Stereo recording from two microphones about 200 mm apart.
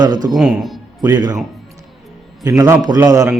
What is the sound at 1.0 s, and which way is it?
Speech, 20° right (ahead or behind).